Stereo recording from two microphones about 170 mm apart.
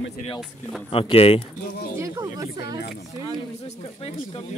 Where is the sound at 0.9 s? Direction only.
35° left (ahead or behind).